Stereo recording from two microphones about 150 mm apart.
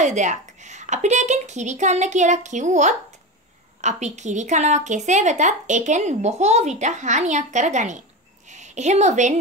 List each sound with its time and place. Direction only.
0.0 s a woman's voice: 50° right (ahead or behind)